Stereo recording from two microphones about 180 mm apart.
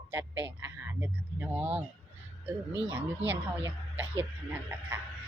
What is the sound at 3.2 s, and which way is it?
Speech, 10° right (ahead or behind).